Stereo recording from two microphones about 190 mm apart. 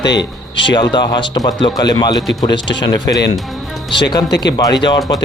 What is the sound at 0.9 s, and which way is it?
Speech, 20° left (ahead or behind).